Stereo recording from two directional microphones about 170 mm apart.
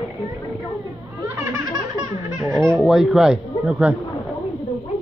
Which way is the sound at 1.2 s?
15° right (ahead or behind).